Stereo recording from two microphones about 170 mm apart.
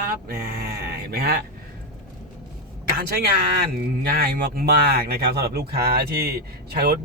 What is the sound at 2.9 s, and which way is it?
A woman's voice, 60° right (ahead or behind).